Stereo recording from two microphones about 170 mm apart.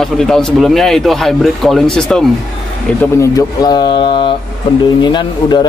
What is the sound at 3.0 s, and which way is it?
Speech, 20° left (ahead or behind).